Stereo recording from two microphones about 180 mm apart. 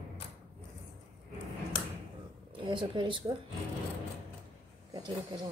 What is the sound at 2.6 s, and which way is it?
Speech, 25° right (ahead or behind).